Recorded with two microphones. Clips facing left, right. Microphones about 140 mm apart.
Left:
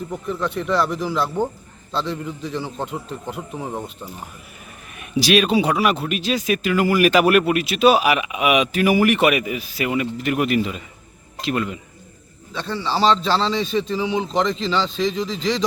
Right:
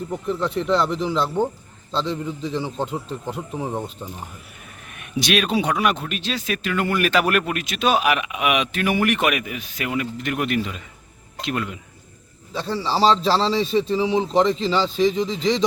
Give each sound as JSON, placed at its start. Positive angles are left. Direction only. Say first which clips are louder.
{"t": 0.3, "sound": "speech", "louder": "right 2 dB", "side_deg": -30}
{"t": 2.6, "sound": "speech", "louder": "right 2 dB", "side_deg": 0}
{"t": 2.8, "sound": "speech", "louder": "right 1 dB", "side_deg": -30}
{"t": 3.5, "sound": "speech", "louder": "right 2 dB", "side_deg": 0}
{"t": 4.9, "sound": "speech", "louder": "left 4 dB", "side_deg": 0}
{"t": 12.5, "sound": "a man's voice", "louder": "right 1 dB", "side_deg": -30}